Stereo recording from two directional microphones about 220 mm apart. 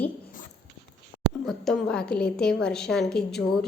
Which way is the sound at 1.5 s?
5° left (ahead or behind).